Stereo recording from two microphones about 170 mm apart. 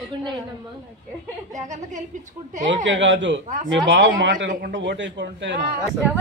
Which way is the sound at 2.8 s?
90° right.